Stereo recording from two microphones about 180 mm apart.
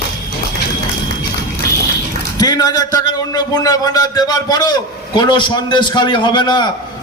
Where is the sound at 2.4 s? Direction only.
20° left (ahead or behind).